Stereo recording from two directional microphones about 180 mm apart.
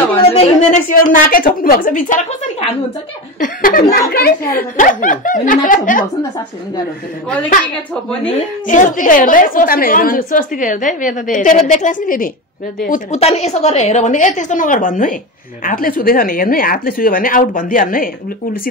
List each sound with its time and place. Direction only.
0.1 s a woman's voice: 35° left (ahead or behind)
7.9 s a woman's voice: 5° left (ahead or behind)
8.3 s a woman's voice: 40° left (ahead or behind)